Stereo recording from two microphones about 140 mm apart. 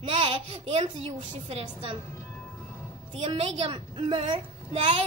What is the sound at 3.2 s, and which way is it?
A woman's voice, 40° right (ahead or behind).